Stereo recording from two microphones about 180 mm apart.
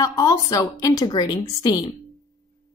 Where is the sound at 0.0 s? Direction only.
20° left (ahead or behind).